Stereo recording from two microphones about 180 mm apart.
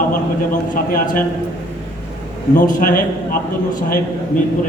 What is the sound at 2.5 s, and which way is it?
Speech, 45° left (ahead or behind).